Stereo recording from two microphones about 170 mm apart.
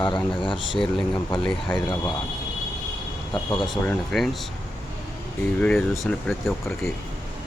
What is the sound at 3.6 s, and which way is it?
Speech, centre (ahead or behind).